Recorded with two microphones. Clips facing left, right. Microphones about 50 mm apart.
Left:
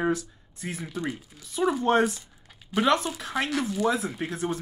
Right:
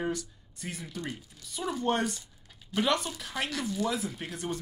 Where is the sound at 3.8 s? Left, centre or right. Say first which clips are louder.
Left 6 dB; left.